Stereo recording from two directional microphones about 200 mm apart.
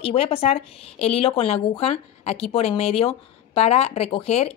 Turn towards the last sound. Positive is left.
turn(degrees=30)  # may be behind; listen again after turning